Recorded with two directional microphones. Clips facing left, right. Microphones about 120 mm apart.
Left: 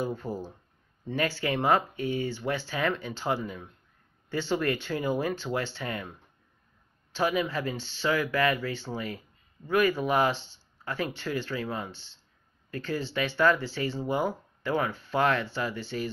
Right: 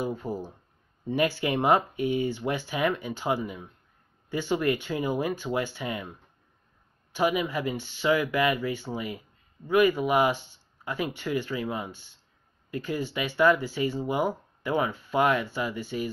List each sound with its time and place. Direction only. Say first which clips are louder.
0.0 s speech: right 1 dB; 10° right (ahead or behind)
7.2 s speech: right 2 dB; 15° right (ahead or behind)
10.3 s speech: right 3 dB; 85° left
10.9 s speech: right 2 dB; 15° right (ahead or behind)